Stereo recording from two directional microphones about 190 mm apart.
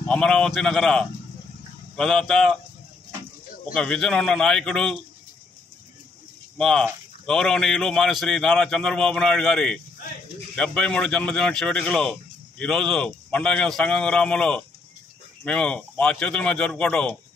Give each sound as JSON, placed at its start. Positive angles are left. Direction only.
{"t": 0.1, "sound": "speech", "side_deg": 5}
{"t": 3.7, "sound": "speech", "side_deg": 5}
{"t": 6.6, "sound": "speech", "side_deg": 5}